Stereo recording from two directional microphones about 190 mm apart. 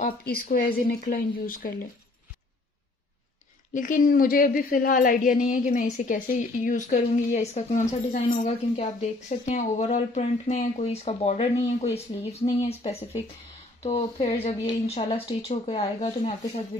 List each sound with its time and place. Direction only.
0.0 s a woman's voice: 55° left (ahead or behind)
3.7 s a woman's voice: 45° left (ahead or behind)